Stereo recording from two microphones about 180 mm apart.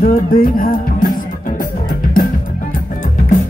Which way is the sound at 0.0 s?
50° left (ahead or behind).